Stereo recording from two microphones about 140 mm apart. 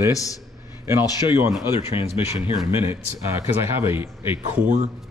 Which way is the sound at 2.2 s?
40° left (ahead or behind).